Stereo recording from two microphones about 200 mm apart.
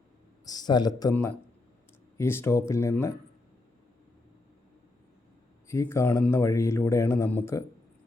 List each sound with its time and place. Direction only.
0.4 s a man's voice: 20° left (ahead or behind)
5.6 s speech: 15° left (ahead or behind)